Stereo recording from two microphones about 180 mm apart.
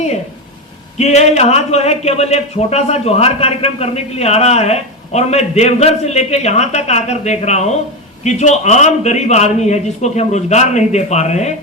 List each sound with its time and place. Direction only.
0.9 s speech: 40° left (ahead or behind)